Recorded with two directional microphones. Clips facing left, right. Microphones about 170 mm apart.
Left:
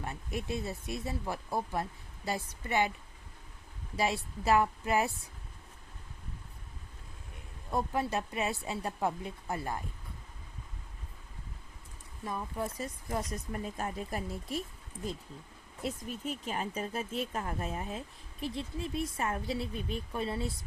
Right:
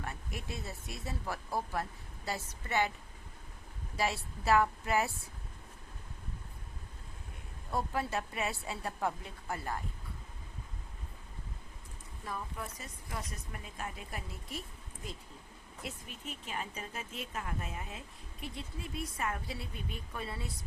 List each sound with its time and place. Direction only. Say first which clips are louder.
0.0 s speech: left 5 dB; 20° left (ahead or behind)
3.9 s speech: left 3 dB; 20° left (ahead or behind)
7.7 s speech: left 3 dB; 20° left (ahead or behind)
12.6 s speech: left 8 dB; 35° left (ahead or behind)
15.8 s speech: left 8 dB; 40° left (ahead or behind)